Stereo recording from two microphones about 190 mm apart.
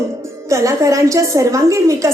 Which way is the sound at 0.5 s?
15° right (ahead or behind).